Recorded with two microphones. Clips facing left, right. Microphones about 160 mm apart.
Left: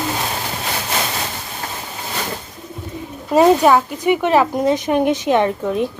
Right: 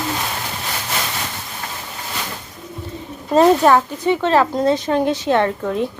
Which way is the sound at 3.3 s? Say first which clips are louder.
Even; 10° left (ahead or behind).